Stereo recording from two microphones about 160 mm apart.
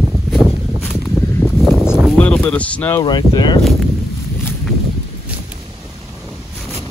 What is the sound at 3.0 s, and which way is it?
Speech, 30° left (ahead or behind).